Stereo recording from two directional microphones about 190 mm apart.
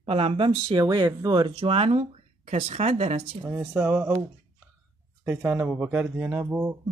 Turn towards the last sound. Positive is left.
turn(degrees=-10)  # may be behind; listen again after turning